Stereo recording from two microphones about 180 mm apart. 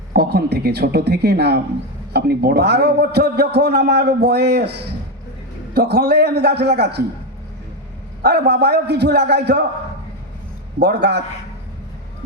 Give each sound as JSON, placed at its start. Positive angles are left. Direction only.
{"t": 0.1, "sound": "a man's voice", "side_deg": -60}
{"t": 8.2, "sound": "a man's voice", "side_deg": -65}
{"t": 10.8, "sound": "a man's voice", "side_deg": -70}